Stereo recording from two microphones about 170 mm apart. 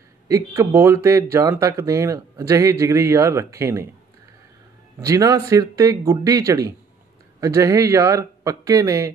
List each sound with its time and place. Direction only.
0.3 s speech: 20° right (ahead or behind)
4.9 s speech: 20° right (ahead or behind)